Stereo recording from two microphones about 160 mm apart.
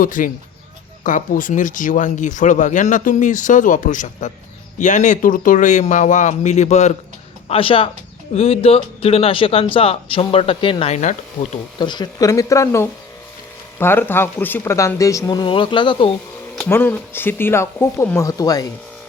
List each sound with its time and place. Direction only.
0.0 s a man's voice: 55° left (ahead or behind)
11.8 s speech: 30° left (ahead or behind)
16.6 s speech: 15° left (ahead or behind)